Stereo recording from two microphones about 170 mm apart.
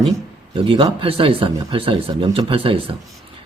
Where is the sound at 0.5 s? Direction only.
30° right (ahead or behind).